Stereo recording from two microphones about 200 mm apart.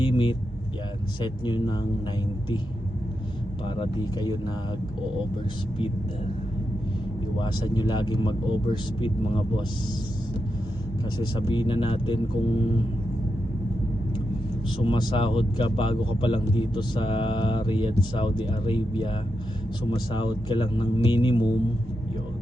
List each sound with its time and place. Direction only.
0.0 s vehicle: 25° left (ahead or behind)
1.2 s speech: 20° left (ahead or behind)
3.8 s speech: 20° left (ahead or behind)
7.3 s speech: 20° left (ahead or behind)
11.2 s speech: 25° left (ahead or behind)
14.8 s speech: 20° left (ahead or behind)
20.1 s speech: 25° left (ahead or behind)